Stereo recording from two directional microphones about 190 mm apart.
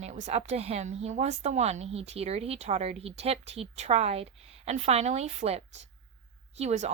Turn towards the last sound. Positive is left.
turn(degrees=-35)  # may be behind; listen again after turning